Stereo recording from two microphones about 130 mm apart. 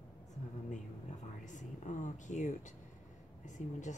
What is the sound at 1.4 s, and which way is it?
Speech, 70° left (ahead or behind).